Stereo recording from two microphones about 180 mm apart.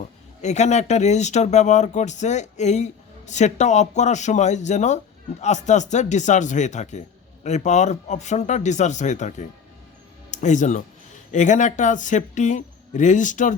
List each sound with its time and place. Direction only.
0.4 s speech: 40° left (ahead or behind)